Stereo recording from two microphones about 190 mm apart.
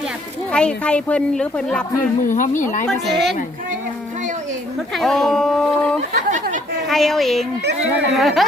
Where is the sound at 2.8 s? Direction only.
Centre (ahead or behind).